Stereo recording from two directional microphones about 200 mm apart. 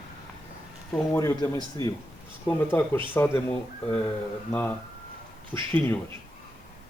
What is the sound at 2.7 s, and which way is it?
Speech, 10° left (ahead or behind).